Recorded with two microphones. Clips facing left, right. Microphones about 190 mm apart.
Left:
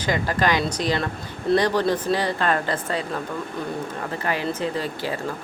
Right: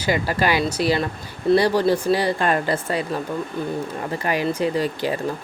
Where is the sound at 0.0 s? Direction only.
10° right (ahead or behind).